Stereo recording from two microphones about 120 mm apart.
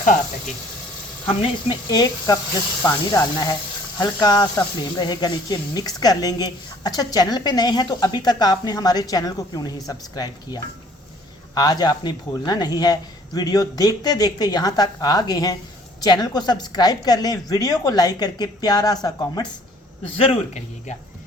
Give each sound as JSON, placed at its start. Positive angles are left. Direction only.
{"t": 0.0, "sound": "speech", "side_deg": 90}
{"t": 1.3, "sound": "speech", "side_deg": 40}
{"t": 20.1, "sound": "speech", "side_deg": 70}